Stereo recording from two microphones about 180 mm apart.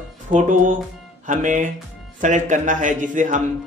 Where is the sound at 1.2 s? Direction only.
45° right (ahead or behind).